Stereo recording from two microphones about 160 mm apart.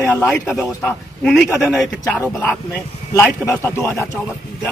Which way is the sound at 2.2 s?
10° left (ahead or behind).